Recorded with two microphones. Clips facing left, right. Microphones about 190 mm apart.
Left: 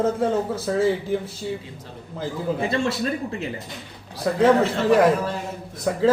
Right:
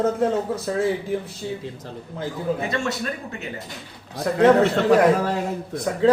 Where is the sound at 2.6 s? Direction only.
30° left (ahead or behind).